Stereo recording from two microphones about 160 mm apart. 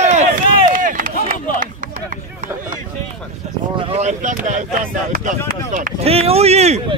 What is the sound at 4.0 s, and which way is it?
Speech, 50° right (ahead or behind).